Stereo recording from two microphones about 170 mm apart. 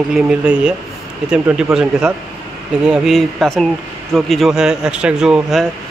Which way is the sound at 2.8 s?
5° right (ahead or behind).